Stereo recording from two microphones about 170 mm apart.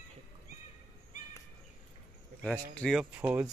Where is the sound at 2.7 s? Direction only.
5° left (ahead or behind).